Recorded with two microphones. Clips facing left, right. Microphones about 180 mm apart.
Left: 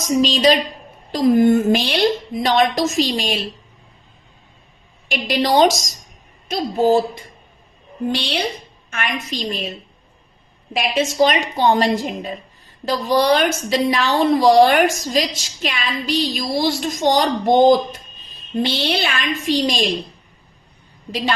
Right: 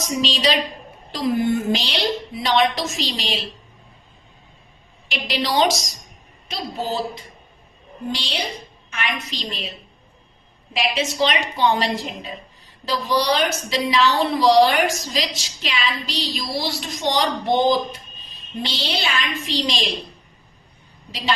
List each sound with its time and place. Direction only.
0.1 s a woman's voice: 45° left (ahead or behind)
5.0 s a woman's voice: 45° left (ahead or behind)
8.1 s a woman's voice: 60° left (ahead or behind)
10.8 s a woman's voice: 45° left (ahead or behind)
21.1 s a woman's voice: 50° left (ahead or behind)